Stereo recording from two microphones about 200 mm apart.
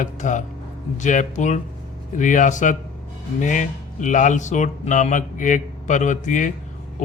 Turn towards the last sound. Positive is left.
turn(degrees=40)  # may be behind; listen again after turning